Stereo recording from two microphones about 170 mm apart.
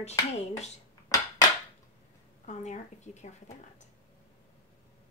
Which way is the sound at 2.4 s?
45° left (ahead or behind).